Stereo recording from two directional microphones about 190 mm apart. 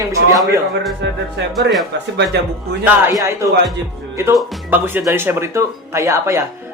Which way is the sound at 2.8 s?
15° right (ahead or behind).